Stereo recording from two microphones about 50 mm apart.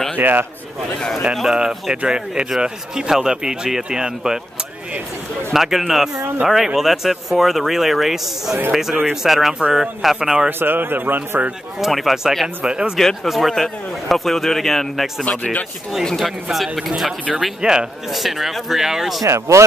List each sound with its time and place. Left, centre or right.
0.2 s a man's voice: right
1.1 s a man's voice: centre
2.0 s speech: centre
5.5 s a man's voice: centre
10.6 s a man's voice: right
11.8 s a man's voice: centre
12.6 s speech: centre
13.0 s a man's voice: centre
15.2 s speech: left
16.0 s a man's voice: centre
17.6 s speech: centre
18.1 s a man's voice: centre
19.2 s speech: right